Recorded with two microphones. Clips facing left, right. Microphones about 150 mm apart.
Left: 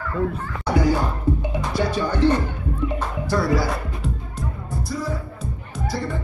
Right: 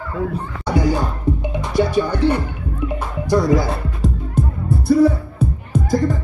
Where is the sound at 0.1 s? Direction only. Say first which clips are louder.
Right 1 dB; centre (ahead or behind).